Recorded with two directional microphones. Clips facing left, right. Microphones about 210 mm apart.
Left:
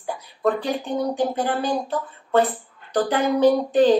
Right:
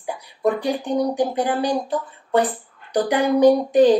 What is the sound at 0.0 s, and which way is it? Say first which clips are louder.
Speech: right 1 dB; 15° right (ahead or behind).